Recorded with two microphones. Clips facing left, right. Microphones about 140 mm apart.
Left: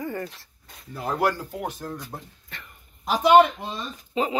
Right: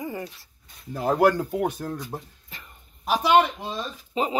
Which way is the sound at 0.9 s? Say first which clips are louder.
Right 5 dB; 50° right (ahead or behind).